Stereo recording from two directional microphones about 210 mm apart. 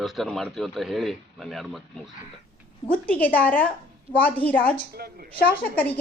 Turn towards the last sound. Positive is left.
turn(degrees=5)  # may be behind; listen again after turning